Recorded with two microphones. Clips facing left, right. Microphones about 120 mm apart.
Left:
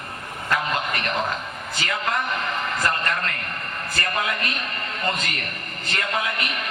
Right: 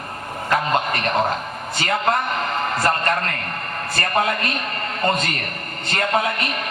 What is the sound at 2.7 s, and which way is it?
A man's voice, 35° right (ahead or behind).